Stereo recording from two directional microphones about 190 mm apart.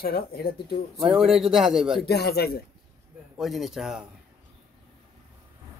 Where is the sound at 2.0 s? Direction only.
60° left (ahead or behind).